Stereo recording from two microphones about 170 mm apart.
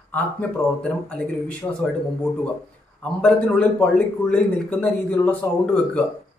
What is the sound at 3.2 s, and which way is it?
A man's voice, 5° left (ahead or behind).